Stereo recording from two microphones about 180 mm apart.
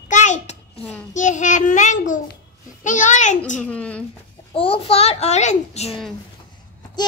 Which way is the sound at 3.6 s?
5° left (ahead or behind).